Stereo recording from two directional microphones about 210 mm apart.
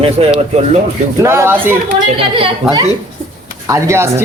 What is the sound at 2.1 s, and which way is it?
Speech, 25° right (ahead or behind).